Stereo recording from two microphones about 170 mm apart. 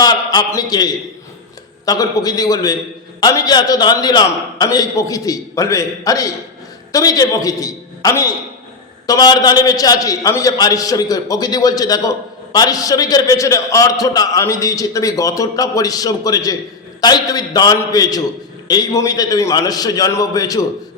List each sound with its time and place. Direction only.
0.0 s a man's voice: 25° left (ahead or behind)